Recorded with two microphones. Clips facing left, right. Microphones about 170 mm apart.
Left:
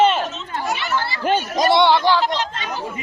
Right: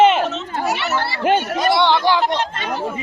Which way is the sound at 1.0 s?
65° right (ahead or behind).